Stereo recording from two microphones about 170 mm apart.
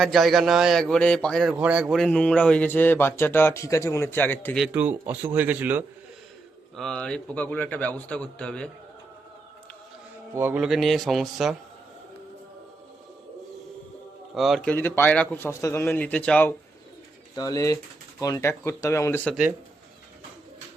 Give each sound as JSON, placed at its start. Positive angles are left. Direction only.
{"t": 0.0, "sound": "a man's voice", "side_deg": 0}
{"t": 4.6, "sound": "speech", "side_deg": -10}
{"t": 6.7, "sound": "a man's voice", "side_deg": 5}
{"t": 10.3, "sound": "a man's voice", "side_deg": -10}
{"t": 14.3, "sound": "a man's voice", "side_deg": 0}
{"t": 14.7, "sound": "a man's voice", "side_deg": 10}
{"t": 17.3, "sound": "a man's voice", "side_deg": 20}